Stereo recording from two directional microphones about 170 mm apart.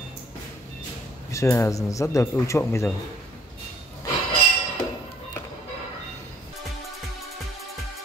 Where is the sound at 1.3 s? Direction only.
15° left (ahead or behind).